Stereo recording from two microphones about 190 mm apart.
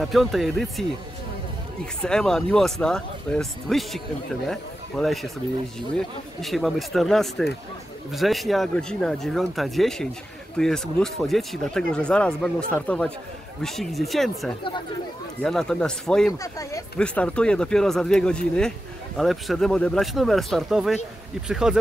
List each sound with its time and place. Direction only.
0.0 s speech: centre (ahead or behind)
2.0 s speech: 5° left (ahead or behind)
16.3 s speech: 15° left (ahead or behind)
17.0 s speech: 5° left (ahead or behind)